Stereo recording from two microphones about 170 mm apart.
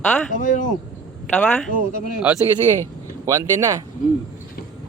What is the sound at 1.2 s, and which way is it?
Speech, 10° left (ahead or behind).